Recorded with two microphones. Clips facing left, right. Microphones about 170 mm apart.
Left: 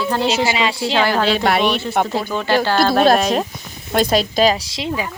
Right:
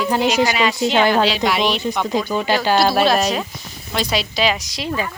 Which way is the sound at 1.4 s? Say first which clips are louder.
Left 3 dB; 55° left (ahead or behind).